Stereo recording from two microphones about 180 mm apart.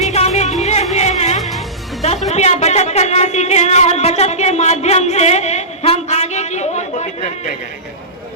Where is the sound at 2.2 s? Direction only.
35° left (ahead or behind).